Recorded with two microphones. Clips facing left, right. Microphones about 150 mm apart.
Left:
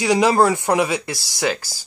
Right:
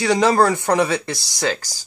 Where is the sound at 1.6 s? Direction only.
15° right (ahead or behind).